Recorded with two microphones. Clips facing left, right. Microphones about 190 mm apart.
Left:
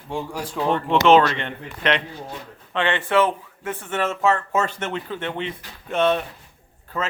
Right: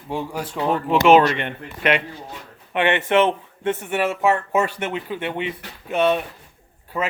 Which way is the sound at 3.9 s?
10° right (ahead or behind).